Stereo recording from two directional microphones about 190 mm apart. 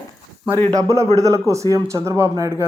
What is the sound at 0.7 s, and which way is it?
Speech, 15° right (ahead or behind).